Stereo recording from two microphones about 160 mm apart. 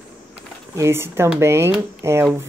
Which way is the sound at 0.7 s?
15° right (ahead or behind).